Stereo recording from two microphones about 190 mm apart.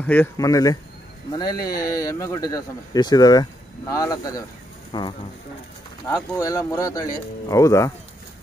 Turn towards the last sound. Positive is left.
turn(degrees=15)  # may be behind; listen again after turning